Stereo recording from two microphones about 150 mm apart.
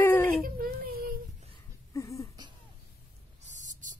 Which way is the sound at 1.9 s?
20° left (ahead or behind).